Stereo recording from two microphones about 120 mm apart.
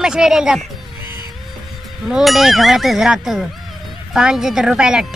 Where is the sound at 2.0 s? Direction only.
Centre (ahead or behind).